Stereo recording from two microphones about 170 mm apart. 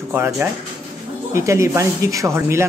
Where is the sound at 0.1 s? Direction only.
15° right (ahead or behind).